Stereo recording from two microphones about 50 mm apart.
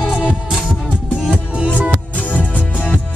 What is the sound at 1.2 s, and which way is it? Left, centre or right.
Music, right.